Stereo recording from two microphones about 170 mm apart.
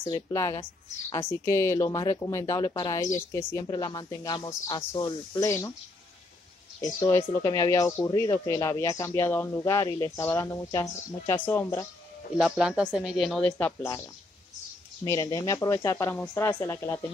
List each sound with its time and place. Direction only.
0.0 s a man's voice: 20° left (ahead or behind)
6.8 s a man's voice: 15° left (ahead or behind)
12.4 s speech: 5° right (ahead or behind); by 14.0 s 15° left (ahead or behind)
15.0 s a man's voice: 20° left (ahead or behind)